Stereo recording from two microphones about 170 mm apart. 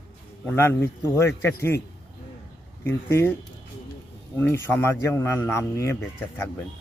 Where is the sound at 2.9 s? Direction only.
15° left (ahead or behind).